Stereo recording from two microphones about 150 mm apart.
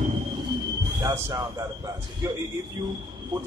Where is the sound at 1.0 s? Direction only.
20° right (ahead or behind).